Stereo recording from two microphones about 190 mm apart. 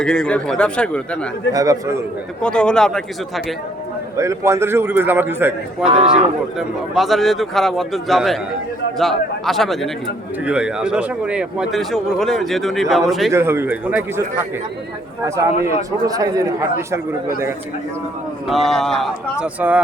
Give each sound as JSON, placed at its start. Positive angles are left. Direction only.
{"t": 0.0, "sound": "speech", "side_deg": 5}
{"t": 1.5, "sound": "a man's voice", "side_deg": -20}
{"t": 2.4, "sound": "speech", "side_deg": 5}
{"t": 4.2, "sound": "a man's voice", "side_deg": -15}
{"t": 5.9, "sound": "speech", "side_deg": -35}
{"t": 6.6, "sound": "speech", "side_deg": 0}
{"t": 13.3, "sound": "a man's voice", "side_deg": -10}
{"t": 16.0, "sound": "a man's voice", "side_deg": -20}
{"t": 18.4, "sound": "speech", "side_deg": 0}